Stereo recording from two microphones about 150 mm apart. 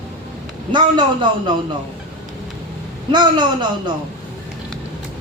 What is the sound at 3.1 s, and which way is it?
Speech, 30° right (ahead or behind).